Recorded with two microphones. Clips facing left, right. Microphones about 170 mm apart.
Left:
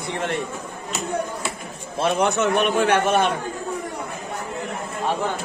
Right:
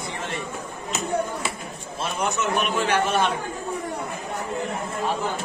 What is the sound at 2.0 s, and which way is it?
A man's voice, 60° left (ahead or behind).